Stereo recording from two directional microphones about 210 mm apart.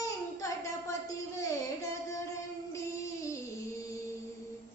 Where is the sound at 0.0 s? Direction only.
15° left (ahead or behind).